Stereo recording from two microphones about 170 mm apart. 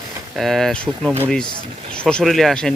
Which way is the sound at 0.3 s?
Centre (ahead or behind).